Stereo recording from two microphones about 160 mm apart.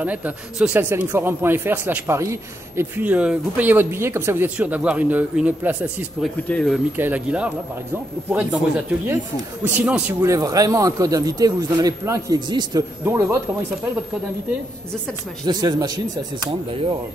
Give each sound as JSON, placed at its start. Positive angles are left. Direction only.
{"t": 0.0, "sound": "speech", "side_deg": -10}
{"t": 6.5, "sound": "speech", "side_deg": 5}
{"t": 7.0, "sound": "speech", "side_deg": -10}
{"t": 10.2, "sound": "speech", "side_deg": -20}
{"t": 13.0, "sound": "speech", "side_deg": -15}
{"t": 15.4, "sound": "speech", "side_deg": -25}